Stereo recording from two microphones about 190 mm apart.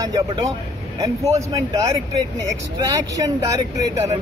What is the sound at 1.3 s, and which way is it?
Speech, 15° right (ahead or behind).